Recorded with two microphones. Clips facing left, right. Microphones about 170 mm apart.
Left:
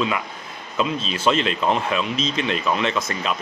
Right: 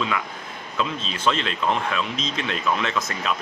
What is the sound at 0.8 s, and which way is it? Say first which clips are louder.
Speech: left 3 dB; 10° left (ahead or behind).